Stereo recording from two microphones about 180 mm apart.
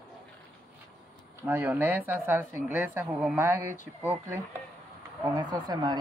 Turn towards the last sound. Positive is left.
turn(degrees=-20)  # may be behind; listen again after turning